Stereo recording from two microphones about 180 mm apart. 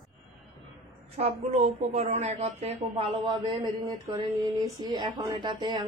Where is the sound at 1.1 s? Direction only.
35° right (ahead or behind).